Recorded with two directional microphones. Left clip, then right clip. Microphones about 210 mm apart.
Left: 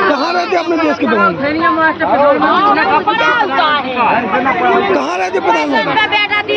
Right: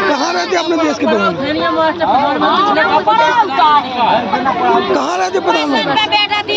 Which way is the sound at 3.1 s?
60° right (ahead or behind).